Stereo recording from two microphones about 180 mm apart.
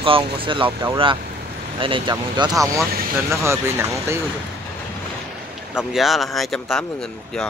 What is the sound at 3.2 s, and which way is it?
Speech, 15° right (ahead or behind).